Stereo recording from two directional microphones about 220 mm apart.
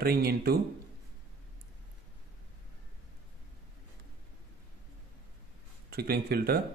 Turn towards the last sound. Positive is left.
turn(degrees=-45)  # may be behind; listen again after turning